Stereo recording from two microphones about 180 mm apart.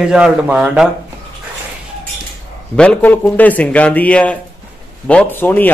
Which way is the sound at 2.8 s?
5° left (ahead or behind).